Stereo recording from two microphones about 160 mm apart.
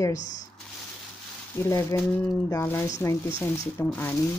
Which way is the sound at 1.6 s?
20° left (ahead or behind).